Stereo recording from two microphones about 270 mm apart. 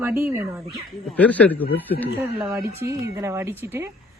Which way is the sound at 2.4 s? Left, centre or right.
Centre.